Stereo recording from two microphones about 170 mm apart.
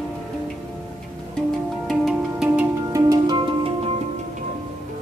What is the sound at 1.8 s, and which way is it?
Music, centre (ahead or behind).